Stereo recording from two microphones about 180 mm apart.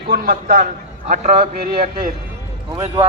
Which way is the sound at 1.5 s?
55° right (ahead or behind).